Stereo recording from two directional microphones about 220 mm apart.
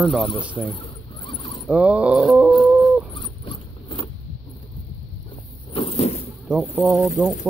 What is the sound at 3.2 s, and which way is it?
Mechanisms, 20° left (ahead or behind).